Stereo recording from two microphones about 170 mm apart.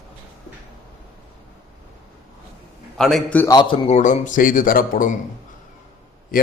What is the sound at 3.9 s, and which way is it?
A man's voice, 45° left (ahead or behind).